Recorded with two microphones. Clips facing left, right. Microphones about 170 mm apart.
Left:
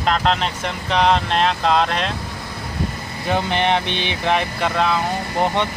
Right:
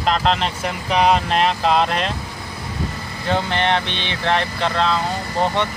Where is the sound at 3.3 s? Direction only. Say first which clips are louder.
Left 1 dB; 15° left (ahead or behind).